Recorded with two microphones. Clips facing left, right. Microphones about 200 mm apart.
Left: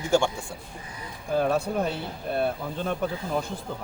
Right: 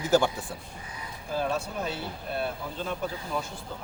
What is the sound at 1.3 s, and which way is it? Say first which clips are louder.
Speech: left 6 dB; 55° left (ahead or behind).